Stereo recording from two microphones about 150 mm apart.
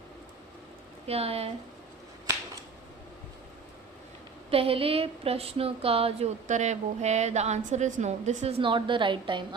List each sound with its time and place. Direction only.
1.0 s speech: 40° right (ahead or behind)
4.5 s speech: 40° right (ahead or behind)